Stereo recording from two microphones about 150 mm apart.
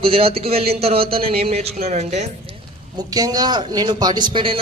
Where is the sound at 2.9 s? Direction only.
25° right (ahead or behind).